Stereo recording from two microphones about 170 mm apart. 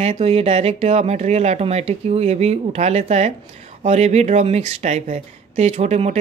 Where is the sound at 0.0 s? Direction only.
35° right (ahead or behind).